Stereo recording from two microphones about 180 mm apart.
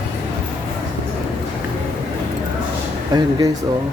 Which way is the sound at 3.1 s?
20° right (ahead or behind).